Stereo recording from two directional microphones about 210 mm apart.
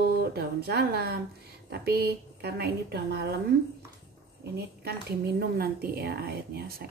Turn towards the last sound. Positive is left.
turn(degrees=-50)  # may be behind; listen again after turning